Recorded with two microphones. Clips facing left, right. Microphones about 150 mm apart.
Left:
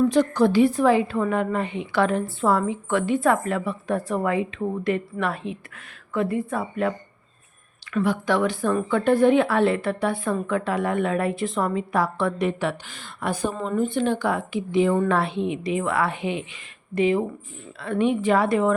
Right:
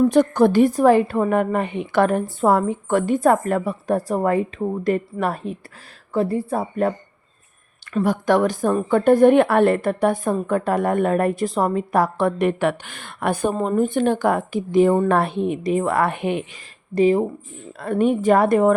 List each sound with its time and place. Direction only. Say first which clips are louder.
0.0 s a woman's voice: right 4 dB; 50° right (ahead or behind)
7.9 s a woman's voice: right 4 dB; 45° right (ahead or behind)
16.9 s a woman's voice: right 4 dB; 35° right (ahead or behind)